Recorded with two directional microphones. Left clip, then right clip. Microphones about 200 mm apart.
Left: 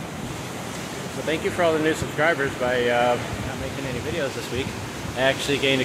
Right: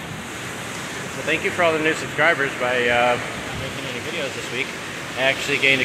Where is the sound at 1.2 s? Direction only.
15° left (ahead or behind).